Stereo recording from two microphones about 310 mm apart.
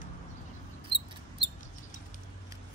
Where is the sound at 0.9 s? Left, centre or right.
Centre.